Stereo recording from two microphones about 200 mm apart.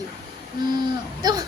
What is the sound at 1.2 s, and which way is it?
Speech, 20° right (ahead or behind).